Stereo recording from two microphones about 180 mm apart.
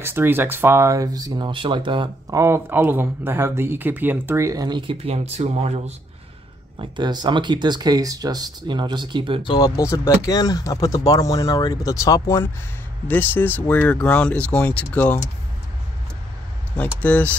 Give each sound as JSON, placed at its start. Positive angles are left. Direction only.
{"t": 0.0, "sound": "speech", "side_deg": -10}
{"t": 2.4, "sound": "speech", "side_deg": -15}
{"t": 6.8, "sound": "speech", "side_deg": -25}
{"t": 9.4, "sound": "speech", "side_deg": 25}
{"t": 17.0, "sound": "speech", "side_deg": 10}